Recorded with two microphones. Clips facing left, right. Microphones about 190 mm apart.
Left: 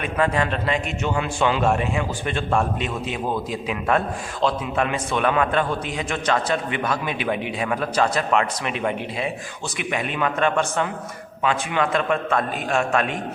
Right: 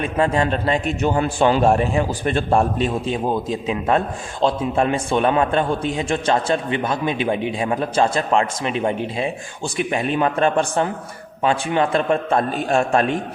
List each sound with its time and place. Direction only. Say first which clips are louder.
0.0 s a man's voice: right 3 dB; 30° right (ahead or behind)
3.2 s a man's voice: right 4 dB; 25° right (ahead or behind)